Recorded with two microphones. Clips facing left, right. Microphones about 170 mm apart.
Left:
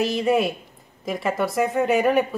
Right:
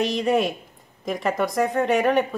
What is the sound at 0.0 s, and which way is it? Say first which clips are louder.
A woman's voice: left 1 dB; 5° left (ahead or behind).